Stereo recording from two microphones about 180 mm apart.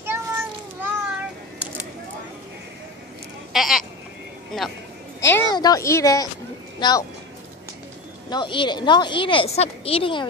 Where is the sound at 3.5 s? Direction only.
Centre (ahead or behind).